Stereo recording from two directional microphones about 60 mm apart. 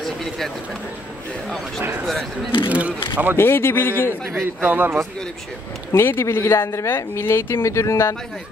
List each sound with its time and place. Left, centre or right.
2.7 s speech: right
3.3 s a man's voice: left
4.3 s speech: right
5.9 s a man's voice: left